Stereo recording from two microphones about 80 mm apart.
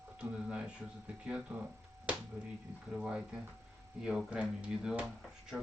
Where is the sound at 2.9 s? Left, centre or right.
Centre.